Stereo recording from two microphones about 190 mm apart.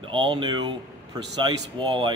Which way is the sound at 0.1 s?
25° right (ahead or behind).